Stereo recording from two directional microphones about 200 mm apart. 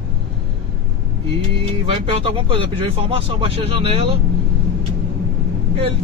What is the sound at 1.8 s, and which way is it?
Speech, 25° right (ahead or behind).